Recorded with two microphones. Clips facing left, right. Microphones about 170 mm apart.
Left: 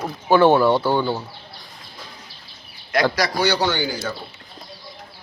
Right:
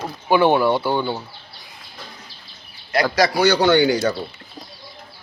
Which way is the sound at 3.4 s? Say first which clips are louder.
Right 6 dB; 55° right (ahead or behind).